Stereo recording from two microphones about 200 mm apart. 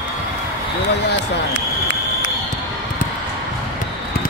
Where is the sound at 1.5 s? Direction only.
70° left (ahead or behind).